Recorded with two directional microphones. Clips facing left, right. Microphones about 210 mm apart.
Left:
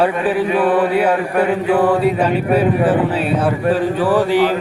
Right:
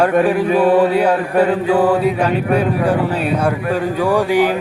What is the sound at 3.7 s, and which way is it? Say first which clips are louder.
Music: left 2 dB; 15° right (ahead or behind).